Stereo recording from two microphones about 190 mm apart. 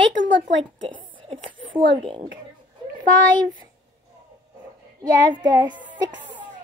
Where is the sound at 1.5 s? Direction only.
25° right (ahead or behind).